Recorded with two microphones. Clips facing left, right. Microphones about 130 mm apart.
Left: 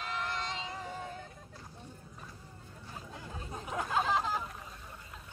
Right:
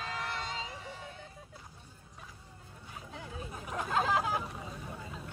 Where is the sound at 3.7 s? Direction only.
Centre (ahead or behind).